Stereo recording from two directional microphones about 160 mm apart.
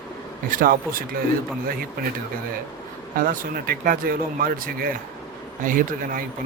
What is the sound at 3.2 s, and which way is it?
Speech, 65° right (ahead or behind).